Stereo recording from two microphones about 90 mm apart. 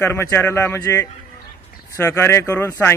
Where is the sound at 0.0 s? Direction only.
30° left (ahead or behind).